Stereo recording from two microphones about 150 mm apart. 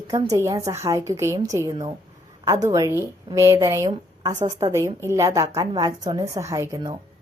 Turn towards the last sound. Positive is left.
turn(degrees=-25)  # may be behind; listen again after turning